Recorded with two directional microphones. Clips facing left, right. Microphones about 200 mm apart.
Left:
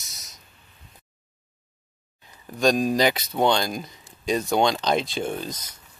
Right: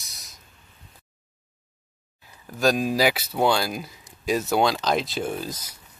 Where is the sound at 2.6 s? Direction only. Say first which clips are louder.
Left 1 dB; 5° right (ahead or behind).